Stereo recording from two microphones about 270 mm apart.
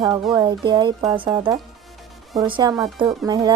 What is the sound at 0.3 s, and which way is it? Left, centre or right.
Speech, centre.